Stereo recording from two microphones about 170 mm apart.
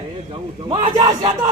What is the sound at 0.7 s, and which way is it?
Speech, 35° right (ahead or behind).